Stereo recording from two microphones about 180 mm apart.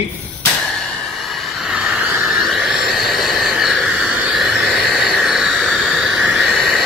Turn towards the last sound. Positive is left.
turn(degrees=0)  # may be behind; listen again after turning